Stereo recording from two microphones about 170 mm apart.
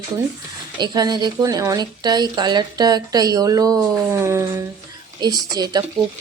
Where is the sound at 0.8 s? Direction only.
25° right (ahead or behind).